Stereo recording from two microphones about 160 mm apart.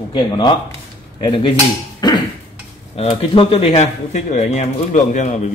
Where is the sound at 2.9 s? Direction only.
35° left (ahead or behind).